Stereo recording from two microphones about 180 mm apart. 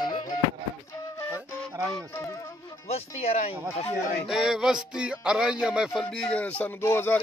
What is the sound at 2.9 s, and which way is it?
Speech, 35° left (ahead or behind).